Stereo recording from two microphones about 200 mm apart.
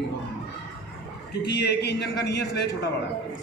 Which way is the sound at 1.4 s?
55° left (ahead or behind).